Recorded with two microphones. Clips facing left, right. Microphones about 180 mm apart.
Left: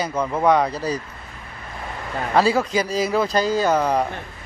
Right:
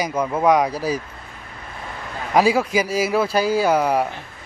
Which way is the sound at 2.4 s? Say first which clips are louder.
Right 2 dB; 10° right (ahead or behind).